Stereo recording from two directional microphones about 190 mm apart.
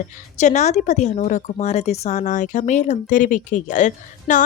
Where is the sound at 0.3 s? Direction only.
40° left (ahead or behind).